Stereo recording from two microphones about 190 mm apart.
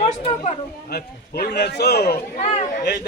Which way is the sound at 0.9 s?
55° left (ahead or behind).